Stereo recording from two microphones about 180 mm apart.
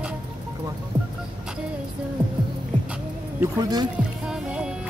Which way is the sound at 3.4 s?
20° right (ahead or behind).